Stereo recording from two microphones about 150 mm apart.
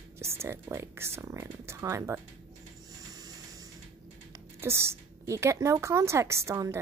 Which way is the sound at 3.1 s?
25° right (ahead or behind).